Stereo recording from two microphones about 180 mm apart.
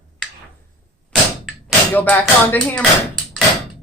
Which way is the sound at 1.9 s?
10° left (ahead or behind).